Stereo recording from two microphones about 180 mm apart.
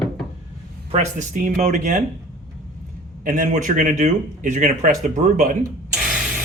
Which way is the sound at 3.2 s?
50° right (ahead or behind).